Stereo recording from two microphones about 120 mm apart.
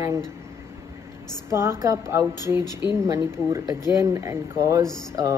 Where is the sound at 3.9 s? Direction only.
25° right (ahead or behind).